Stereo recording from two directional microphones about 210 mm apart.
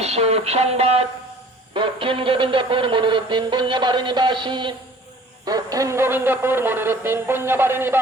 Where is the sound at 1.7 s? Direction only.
25° right (ahead or behind).